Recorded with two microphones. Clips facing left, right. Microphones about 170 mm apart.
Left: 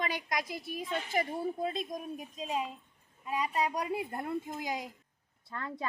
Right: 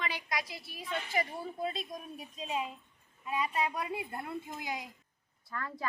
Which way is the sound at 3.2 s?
40° left (ahead or behind).